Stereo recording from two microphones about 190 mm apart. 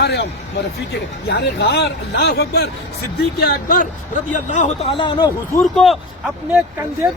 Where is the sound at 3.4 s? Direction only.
45° left (ahead or behind); by 5.3 s 25° left (ahead or behind).